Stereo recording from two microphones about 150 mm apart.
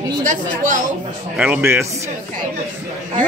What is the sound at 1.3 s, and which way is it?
Speech, 10° right (ahead or behind).